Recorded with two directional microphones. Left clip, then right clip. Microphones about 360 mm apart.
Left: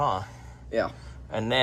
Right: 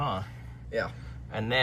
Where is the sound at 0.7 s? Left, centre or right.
Left.